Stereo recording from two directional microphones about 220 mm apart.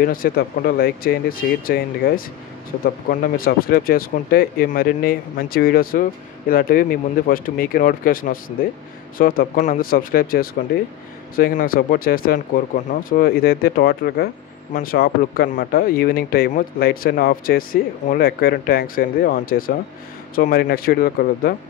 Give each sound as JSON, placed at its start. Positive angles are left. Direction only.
{"t": 0.0, "sound": "speech", "side_deg": 40}